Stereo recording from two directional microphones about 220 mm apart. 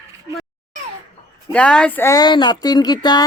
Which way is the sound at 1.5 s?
5° left (ahead or behind).